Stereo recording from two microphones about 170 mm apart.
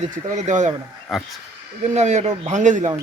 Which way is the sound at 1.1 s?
Centre (ahead or behind).